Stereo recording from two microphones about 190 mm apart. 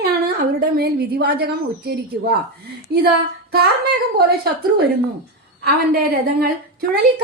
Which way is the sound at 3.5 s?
55° right (ahead or behind).